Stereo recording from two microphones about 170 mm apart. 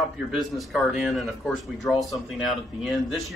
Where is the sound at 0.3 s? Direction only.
Centre (ahead or behind).